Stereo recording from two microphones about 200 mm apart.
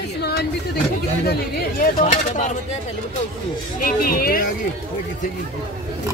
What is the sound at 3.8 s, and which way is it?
Speech, 45° left (ahead or behind).